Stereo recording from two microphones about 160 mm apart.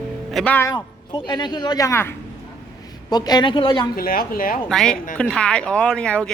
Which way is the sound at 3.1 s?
25° left (ahead or behind).